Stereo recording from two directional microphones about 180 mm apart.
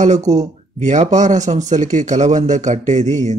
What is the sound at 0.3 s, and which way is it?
Speech, 40° right (ahead or behind).